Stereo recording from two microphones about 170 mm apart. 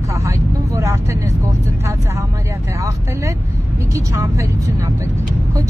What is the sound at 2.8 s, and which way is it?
A woman's voice, 15° right (ahead or behind).